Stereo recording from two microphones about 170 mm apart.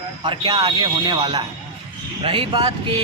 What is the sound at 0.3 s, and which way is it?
A man's voice, 25° right (ahead or behind).